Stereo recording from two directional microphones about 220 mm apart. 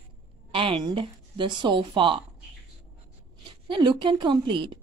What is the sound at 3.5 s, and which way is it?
A woman's voice, 20° right (ahead or behind).